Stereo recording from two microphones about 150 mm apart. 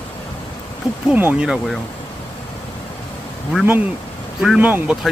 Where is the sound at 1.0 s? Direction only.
10° right (ahead or behind).